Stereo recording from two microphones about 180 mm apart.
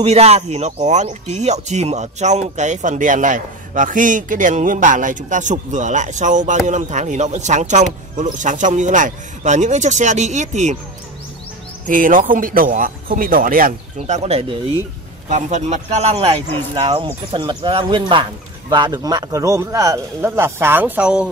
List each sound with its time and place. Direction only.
0.0 s speech: 35° right (ahead or behind)
11.9 s speech: 50° right (ahead or behind); by 14.8 s 30° right (ahead or behind)
15.2 s a man's voice: 40° right (ahead or behind); by 21.3 s 5° right (ahead or behind)